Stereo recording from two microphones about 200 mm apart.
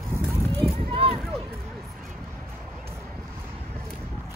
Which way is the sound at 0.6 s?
30° right (ahead or behind).